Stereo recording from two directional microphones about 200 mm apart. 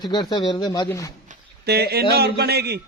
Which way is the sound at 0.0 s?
20° left (ahead or behind).